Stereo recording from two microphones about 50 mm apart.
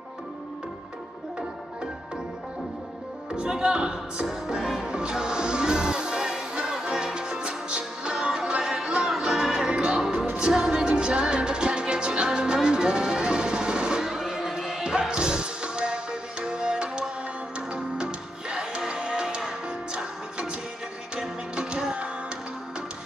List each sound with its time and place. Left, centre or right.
3.3 s music: centre